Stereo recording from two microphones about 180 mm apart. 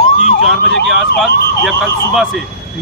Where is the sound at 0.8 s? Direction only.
Centre (ahead or behind).